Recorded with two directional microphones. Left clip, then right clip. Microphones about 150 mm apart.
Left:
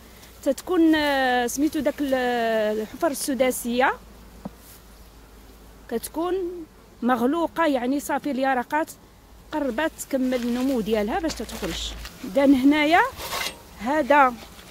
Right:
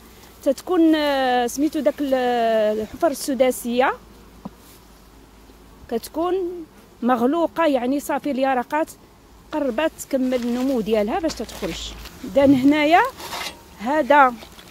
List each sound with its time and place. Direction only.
0.4 s speech: centre (ahead or behind)
5.9 s speech: centre (ahead or behind)
10.4 s speech: 10° left (ahead or behind)
10.8 s speech: centre (ahead or behind)
13.3 s speech: 40° left (ahead or behind)
13.7 s speech: 5° right (ahead or behind)